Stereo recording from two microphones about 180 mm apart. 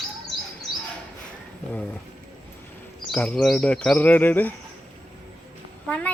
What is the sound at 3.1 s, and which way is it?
Speech, 5° left (ahead or behind).